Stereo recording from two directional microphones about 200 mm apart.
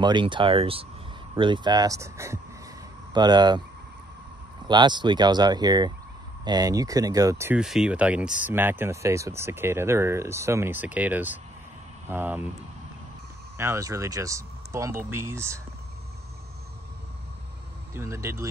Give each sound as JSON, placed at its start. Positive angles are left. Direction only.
{"t": 0.0, "sound": "speech", "side_deg": -25}
{"t": 4.6, "sound": "speech", "side_deg": -20}
{"t": 13.6, "sound": "speech", "side_deg": -15}
{"t": 17.9, "sound": "speech", "side_deg": -15}